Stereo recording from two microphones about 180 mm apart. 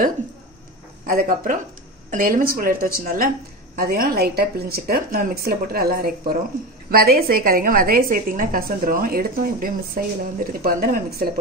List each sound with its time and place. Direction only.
1.0 s a woman's voice: 50° right (ahead or behind)